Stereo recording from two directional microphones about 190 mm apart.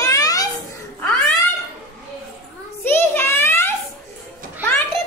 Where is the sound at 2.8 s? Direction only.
10° left (ahead or behind).